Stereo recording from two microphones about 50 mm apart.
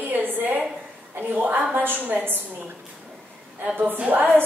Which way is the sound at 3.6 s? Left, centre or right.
Right.